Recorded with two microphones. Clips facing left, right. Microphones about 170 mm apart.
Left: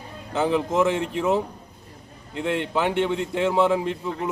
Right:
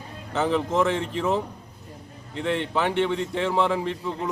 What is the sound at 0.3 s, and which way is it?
A man's voice, 10° left (ahead or behind).